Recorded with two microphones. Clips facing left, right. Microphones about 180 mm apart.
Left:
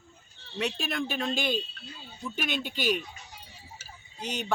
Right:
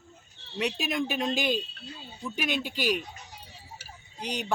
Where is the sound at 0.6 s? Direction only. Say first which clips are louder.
Right 2 dB; 15° right (ahead or behind).